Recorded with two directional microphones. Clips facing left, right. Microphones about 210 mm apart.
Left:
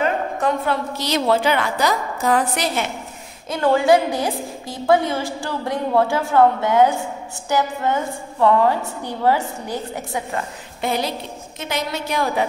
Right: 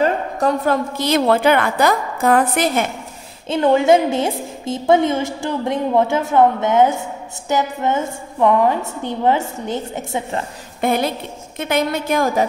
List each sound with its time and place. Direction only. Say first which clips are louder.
0.0 s a woman's voice: right 3 dB; 40° right (ahead or behind)
3.4 s a woman's voice: right 3 dB; 25° right (ahead or behind)
10.8 s a woman's voice: right 4 dB; 55° right (ahead or behind)